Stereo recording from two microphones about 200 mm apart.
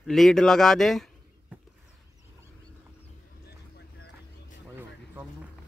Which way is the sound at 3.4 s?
55° left (ahead or behind).